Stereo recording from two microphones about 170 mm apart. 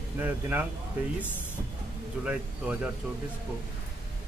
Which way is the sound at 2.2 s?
5° right (ahead or behind).